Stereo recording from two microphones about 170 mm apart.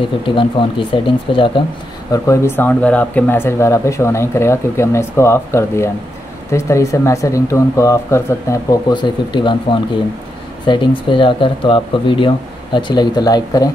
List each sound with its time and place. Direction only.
0.4 s speech: 30° left (ahead or behind)
2.1 s speech: 15° left (ahead or behind)